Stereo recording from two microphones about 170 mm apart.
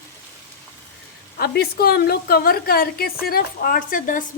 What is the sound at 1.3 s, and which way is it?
A woman's voice, 65° left (ahead or behind).